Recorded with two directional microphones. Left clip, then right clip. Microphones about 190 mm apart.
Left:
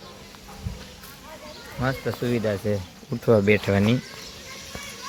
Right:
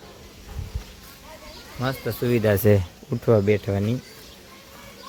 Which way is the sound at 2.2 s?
55° right (ahead or behind).